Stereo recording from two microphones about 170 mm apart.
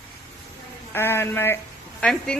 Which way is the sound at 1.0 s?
15° left (ahead or behind).